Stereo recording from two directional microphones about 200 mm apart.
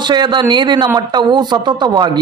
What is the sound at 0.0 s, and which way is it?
A man's voice, 20° right (ahead or behind).